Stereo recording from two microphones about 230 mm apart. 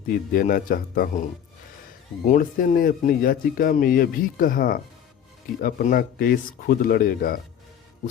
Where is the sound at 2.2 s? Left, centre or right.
Left.